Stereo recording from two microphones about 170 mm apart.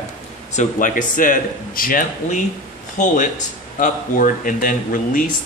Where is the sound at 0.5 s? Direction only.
50° left (ahead or behind).